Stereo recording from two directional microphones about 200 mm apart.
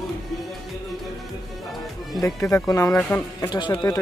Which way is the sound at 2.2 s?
15° left (ahead or behind).